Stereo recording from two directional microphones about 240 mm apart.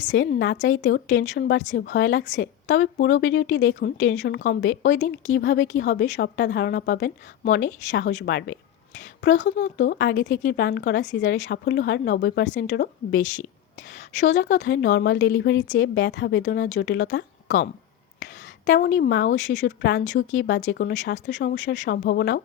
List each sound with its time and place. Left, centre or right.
0.3 s speech: left
5.2 s speech: left
9.3 s a woman's voice: left
9.7 s speech: left
14.3 s speech: left
18.2 s a sound: left
18.9 s speech: left